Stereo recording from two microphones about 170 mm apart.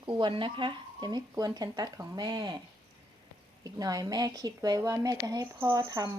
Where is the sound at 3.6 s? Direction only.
20° right (ahead or behind).